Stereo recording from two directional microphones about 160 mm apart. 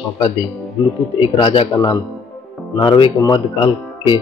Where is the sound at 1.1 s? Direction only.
35° left (ahead or behind).